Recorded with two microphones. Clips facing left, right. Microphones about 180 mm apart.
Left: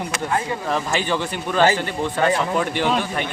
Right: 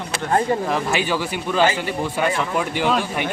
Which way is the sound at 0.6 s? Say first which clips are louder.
Right 1 dB; 10° right (ahead or behind).